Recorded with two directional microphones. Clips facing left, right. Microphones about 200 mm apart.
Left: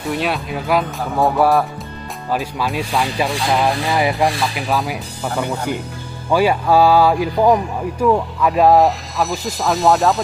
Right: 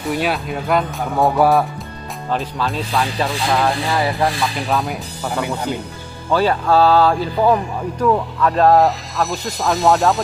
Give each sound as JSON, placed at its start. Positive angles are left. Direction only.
{"t": 0.1, "sound": "speech", "side_deg": 0}
{"t": 2.3, "sound": "speech", "side_deg": 15}
{"t": 4.4, "sound": "speech", "side_deg": 0}
{"t": 6.3, "sound": "speech", "side_deg": 10}